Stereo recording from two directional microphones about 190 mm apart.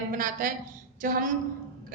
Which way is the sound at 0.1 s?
45° right (ahead or behind).